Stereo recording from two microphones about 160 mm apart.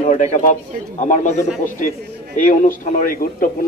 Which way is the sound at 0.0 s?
50° left (ahead or behind).